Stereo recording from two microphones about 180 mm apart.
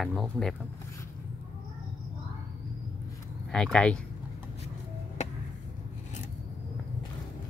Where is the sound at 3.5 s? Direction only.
5° left (ahead or behind).